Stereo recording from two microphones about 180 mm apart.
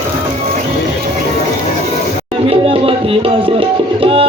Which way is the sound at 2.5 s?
30° right (ahead or behind).